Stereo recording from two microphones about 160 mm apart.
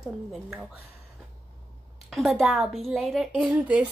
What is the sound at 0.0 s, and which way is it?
Speech, centre (ahead or behind).